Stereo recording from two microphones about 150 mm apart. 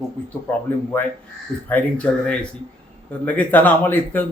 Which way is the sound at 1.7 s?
10° left (ahead or behind).